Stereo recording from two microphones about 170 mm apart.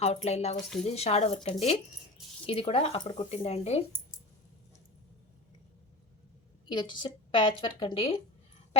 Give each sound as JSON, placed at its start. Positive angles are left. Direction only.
{"t": 0.0, "sound": "speech", "side_deg": 40}
{"t": 6.7, "sound": "speech", "side_deg": 25}